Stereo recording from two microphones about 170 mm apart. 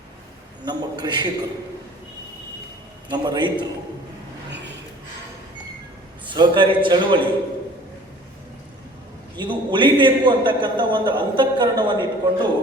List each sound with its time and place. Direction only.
0.6 s a man's voice: 25° right (ahead or behind)
3.1 s a man's voice: 25° right (ahead or behind)
6.2 s a man's voice: 25° right (ahead or behind)
9.4 s a man's voice: 30° right (ahead or behind)